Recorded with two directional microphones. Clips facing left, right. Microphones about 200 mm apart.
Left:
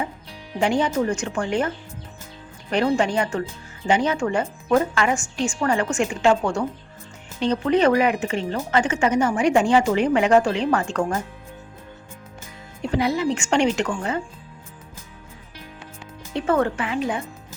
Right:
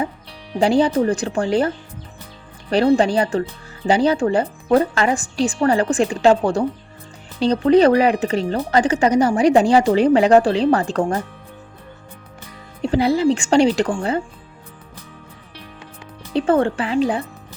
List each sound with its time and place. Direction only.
0.6 s speech: 35° right (ahead or behind)
12.8 s speech: 30° right (ahead or behind)
16.3 s speech: 30° right (ahead or behind)